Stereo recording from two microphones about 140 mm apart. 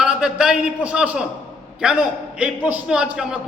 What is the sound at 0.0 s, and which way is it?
A man's voice, 5° right (ahead or behind).